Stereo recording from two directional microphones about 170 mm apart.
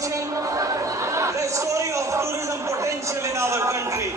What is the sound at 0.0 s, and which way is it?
Chatter, 20° right (ahead or behind).